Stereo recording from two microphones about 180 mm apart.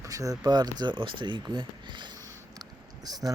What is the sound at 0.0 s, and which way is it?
Speech, 20° right (ahead or behind).